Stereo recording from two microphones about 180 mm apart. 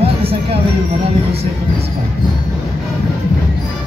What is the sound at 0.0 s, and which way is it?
Music, 30° right (ahead or behind).